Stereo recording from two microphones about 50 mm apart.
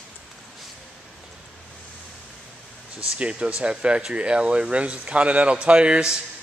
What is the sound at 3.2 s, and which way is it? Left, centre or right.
A man's voice, right.